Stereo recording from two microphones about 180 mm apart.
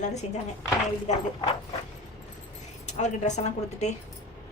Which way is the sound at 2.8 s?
40° left (ahead or behind).